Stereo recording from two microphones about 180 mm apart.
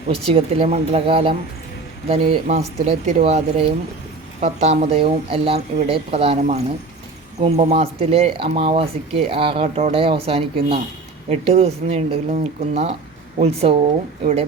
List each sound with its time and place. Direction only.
0.3 s speech: 35° right (ahead or behind)